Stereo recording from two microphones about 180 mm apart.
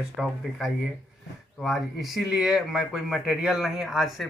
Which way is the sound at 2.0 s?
Centre (ahead or behind).